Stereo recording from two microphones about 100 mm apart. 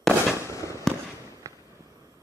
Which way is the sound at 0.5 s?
35° left (ahead or behind).